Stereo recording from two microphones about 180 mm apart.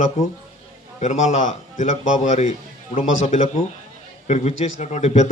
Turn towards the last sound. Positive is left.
turn(degrees=40)  # may be behind; listen again after turning